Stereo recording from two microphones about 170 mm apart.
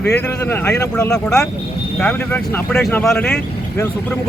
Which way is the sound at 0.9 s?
5° left (ahead or behind).